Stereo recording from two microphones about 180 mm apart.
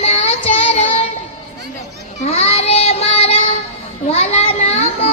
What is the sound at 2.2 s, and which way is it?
Child singing, 35° left (ahead or behind).